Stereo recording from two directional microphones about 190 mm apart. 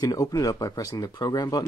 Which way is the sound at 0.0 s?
20° left (ahead or behind).